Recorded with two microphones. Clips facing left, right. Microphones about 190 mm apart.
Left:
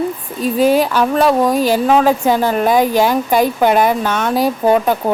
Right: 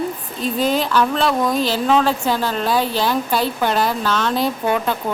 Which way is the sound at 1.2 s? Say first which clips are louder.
Left 6 dB; 35° left (ahead or behind).